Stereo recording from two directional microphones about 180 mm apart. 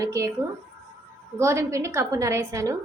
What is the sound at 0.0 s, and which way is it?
Speech, 15° right (ahead or behind).